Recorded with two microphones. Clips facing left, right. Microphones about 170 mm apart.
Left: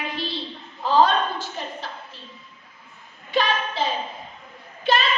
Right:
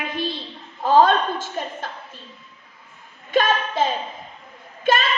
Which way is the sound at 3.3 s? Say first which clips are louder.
Right 3 dB; 50° right (ahead or behind).